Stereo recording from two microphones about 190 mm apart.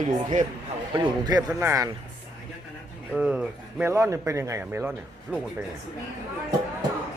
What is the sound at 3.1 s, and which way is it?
Speech, 5° right (ahead or behind).